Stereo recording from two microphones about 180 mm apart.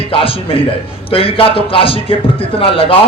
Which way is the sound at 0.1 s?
30° left (ahead or behind).